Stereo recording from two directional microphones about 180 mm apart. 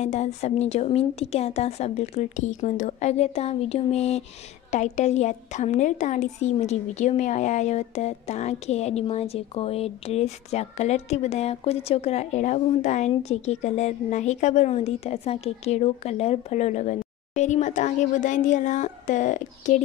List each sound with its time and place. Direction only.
0.0 s a woman's voice: 40° left (ahead or behind)